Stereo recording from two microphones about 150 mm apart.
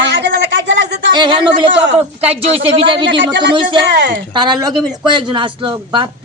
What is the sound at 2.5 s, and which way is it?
Speech, 35° right (ahead or behind).